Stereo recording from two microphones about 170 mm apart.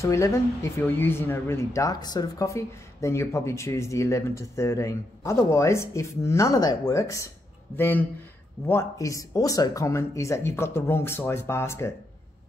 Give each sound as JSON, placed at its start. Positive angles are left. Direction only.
{"t": 0.0, "sound": "speech", "side_deg": 15}